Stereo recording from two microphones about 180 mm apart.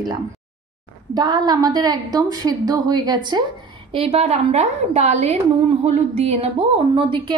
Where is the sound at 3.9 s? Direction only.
35° right (ahead or behind).